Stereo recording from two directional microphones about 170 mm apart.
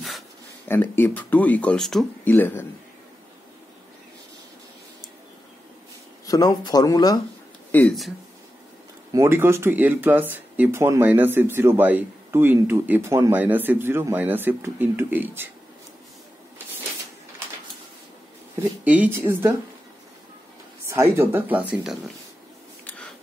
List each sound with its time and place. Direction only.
0.7 s speech: 10° left (ahead or behind)
2.3 s speech: 10° left (ahead or behind)
6.2 s speech: 20° left (ahead or behind)
7.7 s speech: 5° left (ahead or behind)
9.1 s speech: 15° right (ahead or behind)
18.6 s speech: 10° right (ahead or behind)
20.9 s speech: 15° right (ahead or behind)